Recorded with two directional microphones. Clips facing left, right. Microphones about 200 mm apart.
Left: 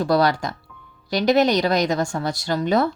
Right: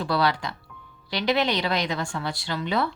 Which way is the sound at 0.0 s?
45° left (ahead or behind).